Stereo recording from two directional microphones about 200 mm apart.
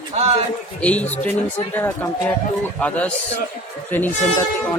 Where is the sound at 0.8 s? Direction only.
5° left (ahead or behind).